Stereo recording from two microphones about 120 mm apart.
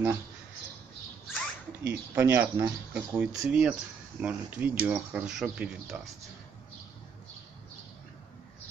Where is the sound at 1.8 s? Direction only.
20° right (ahead or behind).